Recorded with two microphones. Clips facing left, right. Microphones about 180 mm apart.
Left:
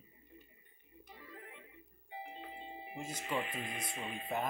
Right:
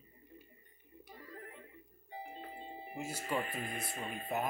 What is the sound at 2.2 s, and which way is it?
Music, 45° right (ahead or behind).